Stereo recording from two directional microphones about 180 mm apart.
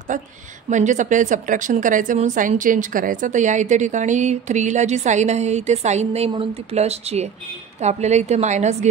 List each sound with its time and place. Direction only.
0.1 s a woman's voice: 45° right (ahead or behind)